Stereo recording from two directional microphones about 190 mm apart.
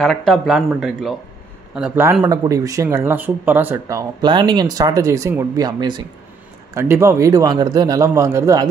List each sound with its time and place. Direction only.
0.0 s a man's voice: centre (ahead or behind)
4.2 s a man's voice: 25° right (ahead or behind)